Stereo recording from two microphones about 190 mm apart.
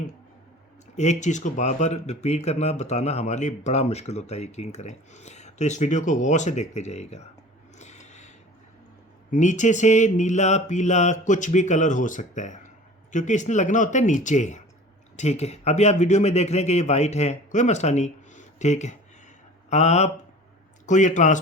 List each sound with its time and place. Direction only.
0.9 s speech: 40° left (ahead or behind)
7.8 s a sound: 40° left (ahead or behind)
9.3 s speech: 40° left (ahead or behind)